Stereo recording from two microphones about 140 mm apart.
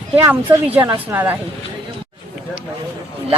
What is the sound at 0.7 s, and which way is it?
Speech, 15° right (ahead or behind).